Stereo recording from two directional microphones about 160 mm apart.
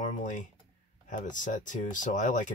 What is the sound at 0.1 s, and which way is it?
Computer keyboard, 50° left (ahead or behind).